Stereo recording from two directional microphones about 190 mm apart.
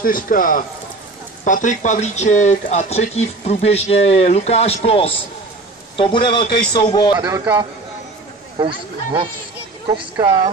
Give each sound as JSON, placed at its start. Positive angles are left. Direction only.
{"t": 0.0, "sound": "a man's voice", "side_deg": 45}
{"t": 7.2, "sound": "speech", "side_deg": -15}